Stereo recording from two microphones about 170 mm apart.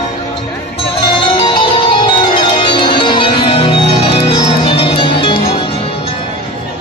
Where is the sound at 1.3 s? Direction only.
30° left (ahead or behind).